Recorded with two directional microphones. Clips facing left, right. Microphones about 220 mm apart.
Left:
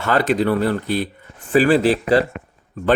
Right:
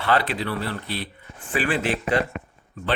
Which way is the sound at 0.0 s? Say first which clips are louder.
Left 6 dB; 45° left (ahead or behind).